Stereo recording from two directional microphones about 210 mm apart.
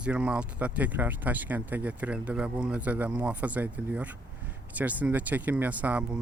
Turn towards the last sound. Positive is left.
turn(degrees=-5)  # may be behind; listen again after turning